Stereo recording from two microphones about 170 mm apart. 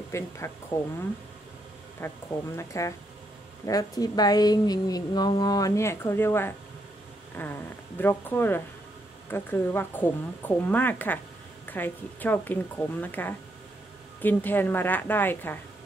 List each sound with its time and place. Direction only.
0.1 s speech: 15° left (ahead or behind)
2.0 s speech: 15° left (ahead or behind)